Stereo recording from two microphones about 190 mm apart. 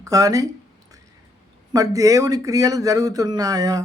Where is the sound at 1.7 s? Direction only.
20° right (ahead or behind).